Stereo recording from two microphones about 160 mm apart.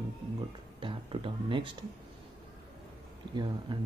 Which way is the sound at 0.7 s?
30° right (ahead or behind).